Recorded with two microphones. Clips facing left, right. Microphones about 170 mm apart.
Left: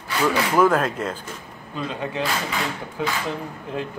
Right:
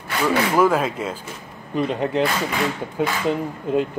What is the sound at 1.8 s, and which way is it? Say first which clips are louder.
Speech: right 7 dB; 20° right (ahead or behind).